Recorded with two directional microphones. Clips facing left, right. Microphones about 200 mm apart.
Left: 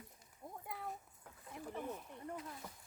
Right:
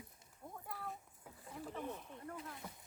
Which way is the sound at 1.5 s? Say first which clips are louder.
Even; 15° left (ahead or behind).